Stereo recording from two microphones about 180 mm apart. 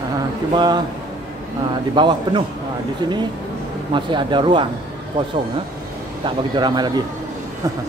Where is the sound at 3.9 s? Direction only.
25° right (ahead or behind).